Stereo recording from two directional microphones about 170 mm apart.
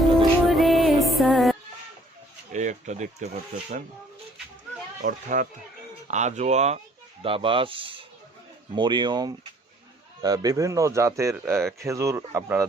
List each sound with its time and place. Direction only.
0.0 s music: centre (ahead or behind)
2.5 s speech: 45° right (ahead or behind)
5.0 s speech: 50° right (ahead or behind); by 12.6 s 15° right (ahead or behind)